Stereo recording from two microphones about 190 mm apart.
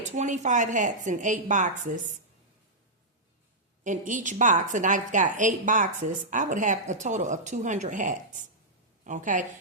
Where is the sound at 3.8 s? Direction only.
40° right (ahead or behind).